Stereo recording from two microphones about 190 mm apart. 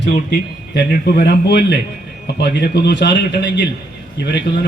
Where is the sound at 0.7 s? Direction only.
55° left (ahead or behind).